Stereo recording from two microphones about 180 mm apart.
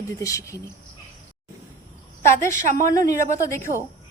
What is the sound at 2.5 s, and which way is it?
Speech, 45° right (ahead or behind).